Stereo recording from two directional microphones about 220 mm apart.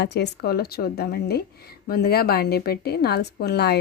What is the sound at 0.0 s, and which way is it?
A woman's voice, 50° left (ahead or behind).